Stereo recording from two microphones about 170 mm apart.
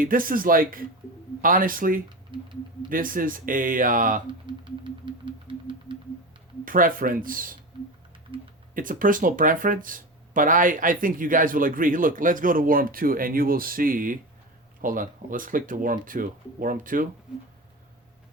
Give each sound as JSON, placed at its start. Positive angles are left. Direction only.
{"t": 0.0, "sound": "speech", "side_deg": -55}
{"t": 2.3, "sound": "speech", "side_deg": -30}
{"t": 2.9, "sound": "speech", "side_deg": -55}
{"t": 4.4, "sound": "a sound", "side_deg": -30}
{"t": 6.7, "sound": "speech", "side_deg": -55}
{"t": 7.7, "sound": "typing", "side_deg": -30}
{"t": 8.7, "sound": "speech", "side_deg": -55}